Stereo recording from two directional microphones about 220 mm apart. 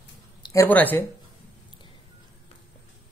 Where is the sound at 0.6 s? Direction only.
10° left (ahead or behind).